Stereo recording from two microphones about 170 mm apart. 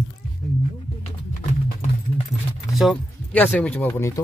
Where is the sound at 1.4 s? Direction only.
40° left (ahead or behind).